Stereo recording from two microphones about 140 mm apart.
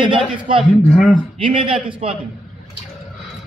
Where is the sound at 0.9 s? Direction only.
5° left (ahead or behind).